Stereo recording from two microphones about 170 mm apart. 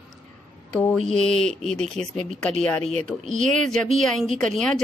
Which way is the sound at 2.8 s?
40° right (ahead or behind).